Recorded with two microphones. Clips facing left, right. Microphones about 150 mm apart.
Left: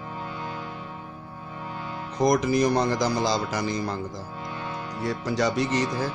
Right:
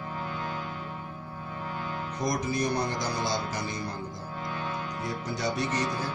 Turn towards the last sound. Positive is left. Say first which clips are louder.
# left 6 dB
turn(degrees=90)